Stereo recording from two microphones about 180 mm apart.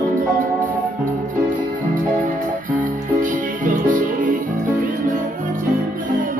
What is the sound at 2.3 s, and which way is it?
Music, 50° right (ahead or behind).